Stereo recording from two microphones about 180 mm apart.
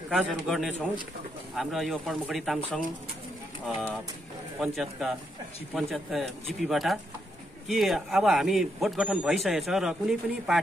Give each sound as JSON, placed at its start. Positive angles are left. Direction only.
{"t": 0.1, "sound": "a man's voice", "side_deg": 0}